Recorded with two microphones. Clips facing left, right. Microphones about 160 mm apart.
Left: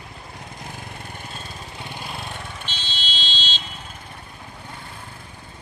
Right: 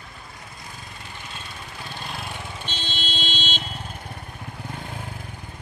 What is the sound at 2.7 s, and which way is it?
Vehicle, 50° right (ahead or behind).